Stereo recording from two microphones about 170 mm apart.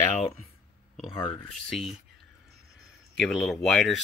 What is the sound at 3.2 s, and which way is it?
Speech, centre (ahead or behind).